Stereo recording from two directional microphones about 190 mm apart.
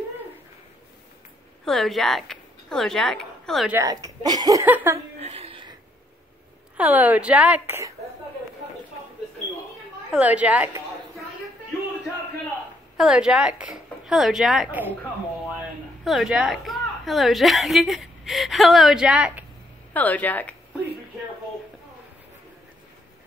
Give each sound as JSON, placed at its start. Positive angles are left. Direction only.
{"t": 1.6, "sound": "a woman's voice", "side_deg": 0}
{"t": 3.7, "sound": "speech", "side_deg": -15}
{"t": 5.2, "sound": "a sound", "side_deg": -30}
{"t": 6.8, "sound": "speech", "side_deg": -10}
{"t": 10.1, "sound": "a woman's voice", "side_deg": -5}
{"t": 12.9, "sound": "a woman's voice", "side_deg": -5}
{"t": 16.0, "sound": "a woman's voice", "side_deg": 0}
{"t": 19.9, "sound": "speech", "side_deg": 10}